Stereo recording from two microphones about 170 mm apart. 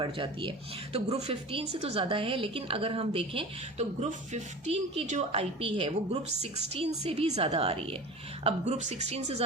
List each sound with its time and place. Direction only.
0.0 s a woman's voice: 30° right (ahead or behind)